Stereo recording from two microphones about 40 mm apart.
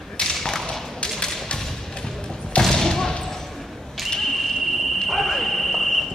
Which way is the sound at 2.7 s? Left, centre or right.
Centre.